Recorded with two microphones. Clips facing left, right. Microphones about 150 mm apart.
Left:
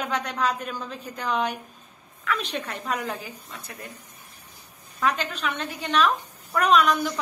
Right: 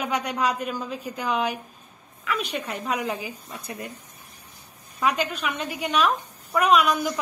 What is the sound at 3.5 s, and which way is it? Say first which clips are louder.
Speech: right 5 dB; 20° right (ahead or behind).